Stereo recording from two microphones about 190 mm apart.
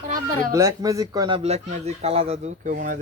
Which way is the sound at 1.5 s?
35° right (ahead or behind).